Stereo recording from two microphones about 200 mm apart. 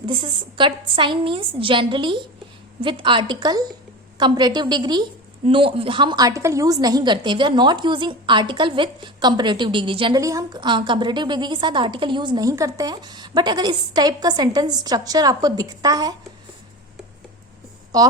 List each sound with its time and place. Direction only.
0.0 s a woman's voice: 25° right (ahead or behind)
17.9 s a woman's voice: 20° right (ahead or behind)